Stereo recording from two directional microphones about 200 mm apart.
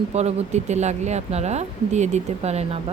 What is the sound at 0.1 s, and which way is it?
Speech, 35° right (ahead or behind).